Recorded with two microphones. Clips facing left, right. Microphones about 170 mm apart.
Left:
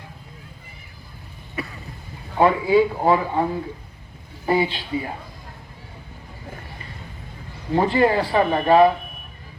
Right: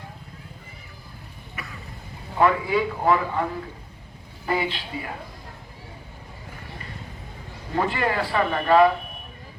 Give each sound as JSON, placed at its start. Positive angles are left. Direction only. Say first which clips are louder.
{"t": 1.6, "sound": "vehicle", "louder": "left 9 dB", "side_deg": 30}
{"t": 2.4, "sound": "speech", "louder": "left 4 dB", "side_deg": 25}
{"t": 7.7, "sound": "speech", "louder": "left 6 dB", "side_deg": 30}